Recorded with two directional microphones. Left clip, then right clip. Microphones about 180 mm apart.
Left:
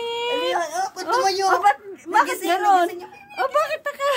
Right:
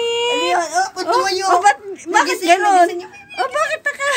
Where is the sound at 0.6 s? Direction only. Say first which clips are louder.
Right 6 dB; 25° left (ahead or behind).